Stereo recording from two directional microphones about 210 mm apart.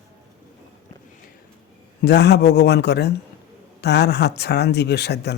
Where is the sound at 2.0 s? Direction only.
55° left (ahead or behind).